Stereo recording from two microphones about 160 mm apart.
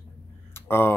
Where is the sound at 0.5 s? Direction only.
15° left (ahead or behind).